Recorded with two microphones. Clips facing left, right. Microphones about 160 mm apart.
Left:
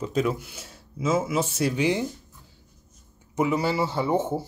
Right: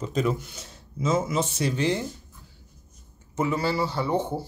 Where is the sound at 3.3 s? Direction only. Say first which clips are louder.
Left 2 dB; 15° left (ahead or behind).